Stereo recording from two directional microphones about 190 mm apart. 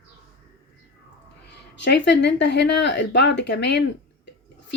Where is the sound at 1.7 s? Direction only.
65° left (ahead or behind).